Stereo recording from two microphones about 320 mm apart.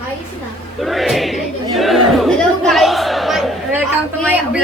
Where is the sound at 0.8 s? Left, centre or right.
Centre.